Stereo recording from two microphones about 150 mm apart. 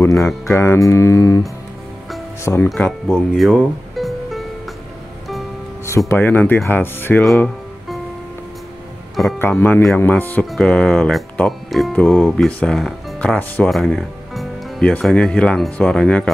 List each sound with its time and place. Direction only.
0.1 s speech: centre (ahead or behind)
0.5 s speech: 15° left (ahead or behind)
2.4 s speech: 20° left (ahead or behind)
2.7 s speech: centre (ahead or behind)
5.9 s speech: 20° left (ahead or behind)
7.3 s music: 5° left (ahead or behind)
9.4 s speech: 15° left (ahead or behind)